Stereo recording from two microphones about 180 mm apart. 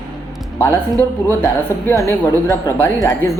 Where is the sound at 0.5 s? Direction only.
10° left (ahead or behind).